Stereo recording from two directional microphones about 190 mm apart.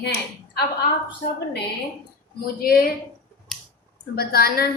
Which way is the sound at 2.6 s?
50° left (ahead or behind).